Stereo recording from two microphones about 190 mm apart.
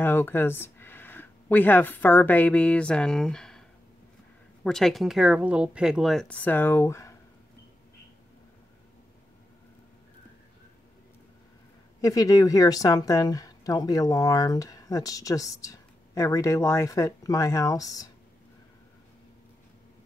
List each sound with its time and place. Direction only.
0.0 s speech: 10° left (ahead or behind)
4.6 s a woman's voice: centre (ahead or behind)
12.0 s speech: 20° left (ahead or behind)